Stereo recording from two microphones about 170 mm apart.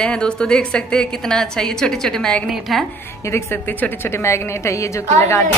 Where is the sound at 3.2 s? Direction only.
15° left (ahead or behind).